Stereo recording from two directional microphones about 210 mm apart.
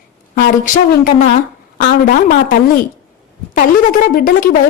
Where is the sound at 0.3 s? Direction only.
40° left (ahead or behind).